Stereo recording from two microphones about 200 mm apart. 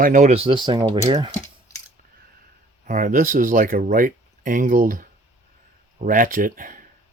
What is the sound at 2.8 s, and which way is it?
Speech, 40° right (ahead or behind).